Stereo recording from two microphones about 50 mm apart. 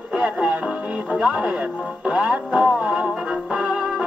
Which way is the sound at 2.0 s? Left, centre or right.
Centre.